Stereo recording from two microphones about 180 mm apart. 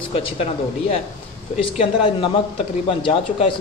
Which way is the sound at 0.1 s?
35° left (ahead or behind).